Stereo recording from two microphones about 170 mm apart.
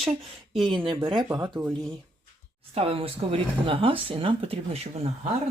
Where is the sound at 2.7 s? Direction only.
35° right (ahead or behind).